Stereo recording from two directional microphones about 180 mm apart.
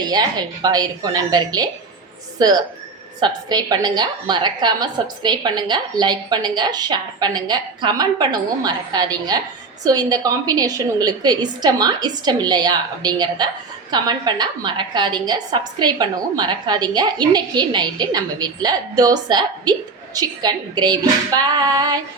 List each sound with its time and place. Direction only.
0.0 s a woman's voice: 20° right (ahead or behind)